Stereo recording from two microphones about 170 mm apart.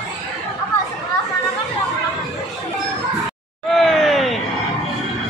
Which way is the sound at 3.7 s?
Centre (ahead or behind).